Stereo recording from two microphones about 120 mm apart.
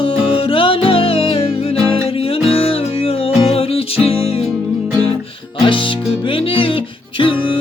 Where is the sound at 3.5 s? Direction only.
55° left (ahead or behind).